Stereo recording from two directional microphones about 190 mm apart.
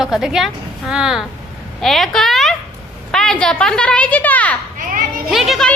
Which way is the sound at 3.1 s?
5° left (ahead or behind).